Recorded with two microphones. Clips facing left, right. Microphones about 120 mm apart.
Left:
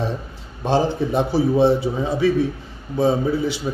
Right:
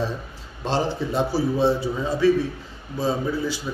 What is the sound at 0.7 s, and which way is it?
A man's voice, 20° left (ahead or behind).